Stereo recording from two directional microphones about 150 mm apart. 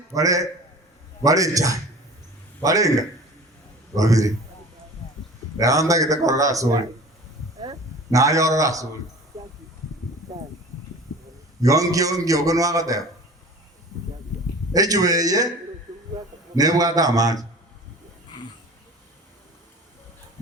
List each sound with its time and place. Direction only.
0.1 s a man's voice: 20° right (ahead or behind)
5.5 s a man's voice: 20° right (ahead or behind)
8.1 s a man's voice: 20° right (ahead or behind)
9.3 s a sound: 20° right (ahead or behind)
11.6 s a man's voice: 25° right (ahead or behind)
14.7 s a man's voice: 25° right (ahead or behind)
16.6 s a man's voice: 25° right (ahead or behind)